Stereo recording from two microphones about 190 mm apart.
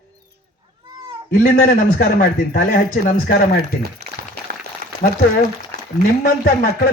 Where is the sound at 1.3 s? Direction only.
50° left (ahead or behind).